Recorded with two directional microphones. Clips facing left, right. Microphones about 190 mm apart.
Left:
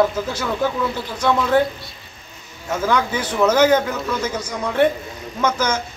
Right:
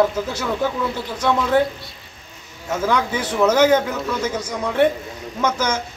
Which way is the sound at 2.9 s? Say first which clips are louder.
Left 1 dB; 20° right (ahead or behind).